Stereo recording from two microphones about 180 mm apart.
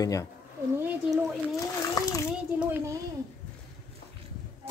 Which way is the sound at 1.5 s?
20° left (ahead or behind).